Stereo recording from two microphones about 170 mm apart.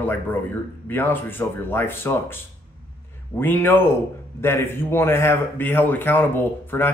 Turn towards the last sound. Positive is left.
turn(degrees=10)  # may be behind; listen again after turning